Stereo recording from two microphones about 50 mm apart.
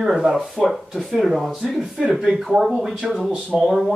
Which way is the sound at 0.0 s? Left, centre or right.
Centre.